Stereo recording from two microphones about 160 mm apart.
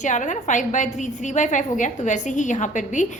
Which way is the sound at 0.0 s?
50° left (ahead or behind).